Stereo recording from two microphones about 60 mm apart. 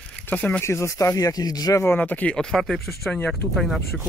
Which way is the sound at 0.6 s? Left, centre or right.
Left.